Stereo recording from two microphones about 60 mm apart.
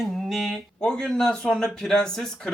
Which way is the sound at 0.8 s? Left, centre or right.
Centre.